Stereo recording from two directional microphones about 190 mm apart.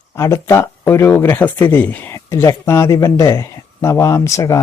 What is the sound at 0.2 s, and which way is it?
Speech, 15° left (ahead or behind).